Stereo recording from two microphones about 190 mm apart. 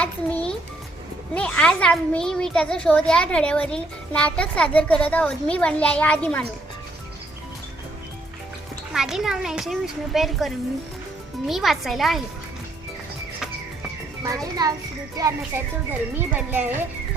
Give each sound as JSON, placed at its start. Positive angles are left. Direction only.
{"t": 0.0, "sound": "a child's voice", "side_deg": 5}
{"t": 8.9, "sound": "a child's voice", "side_deg": -5}
{"t": 15.2, "sound": "speech", "side_deg": -20}